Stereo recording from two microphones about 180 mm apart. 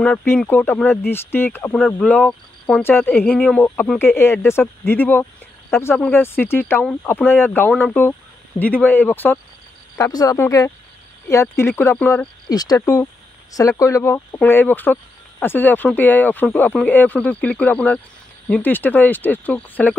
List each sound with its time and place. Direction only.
0.0 s speech: 5° left (ahead or behind)
12.4 s speech: 20° left (ahead or behind)